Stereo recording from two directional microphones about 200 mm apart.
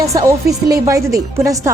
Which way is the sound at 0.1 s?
15° right (ahead or behind).